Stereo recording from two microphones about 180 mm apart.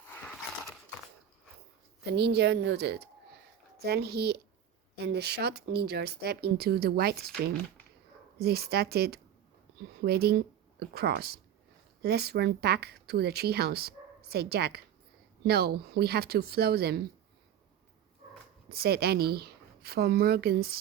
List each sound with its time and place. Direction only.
0.1 s dog: 10° left (ahead or behind)
2.0 s a woman's voice: 70° right (ahead or behind)
8.4 s speech: 60° right (ahead or behind)
18.7 s speech: 60° right (ahead or behind)